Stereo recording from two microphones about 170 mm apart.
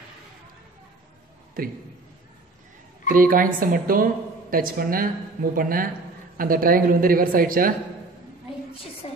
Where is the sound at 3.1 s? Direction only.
55° right (ahead or behind).